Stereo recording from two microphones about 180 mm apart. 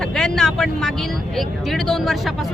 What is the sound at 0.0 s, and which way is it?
Speech, 5° left (ahead or behind).